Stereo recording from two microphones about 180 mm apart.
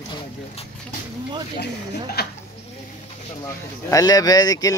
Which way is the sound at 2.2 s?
60° left (ahead or behind).